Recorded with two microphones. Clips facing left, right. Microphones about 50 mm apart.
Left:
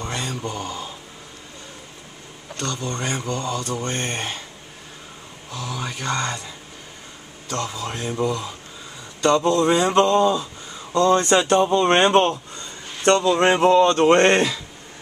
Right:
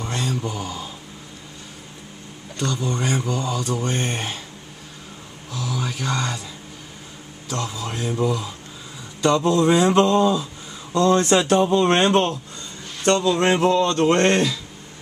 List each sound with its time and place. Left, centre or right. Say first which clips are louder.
0.0 s mantra: right 2 dB; centre
2.5 s speech: right 3 dB; centre
5.5 s speech: right 2 dB; centre; by 14.6 s left